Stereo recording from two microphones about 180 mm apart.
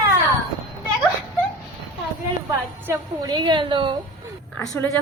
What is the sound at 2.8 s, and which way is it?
A woman's voice, 15° right (ahead or behind).